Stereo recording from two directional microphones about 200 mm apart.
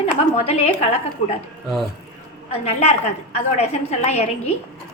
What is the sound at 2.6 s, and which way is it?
A woman's voice, 30° left (ahead or behind).